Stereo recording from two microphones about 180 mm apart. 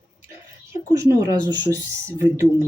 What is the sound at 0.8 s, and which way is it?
Speech, 15° right (ahead or behind).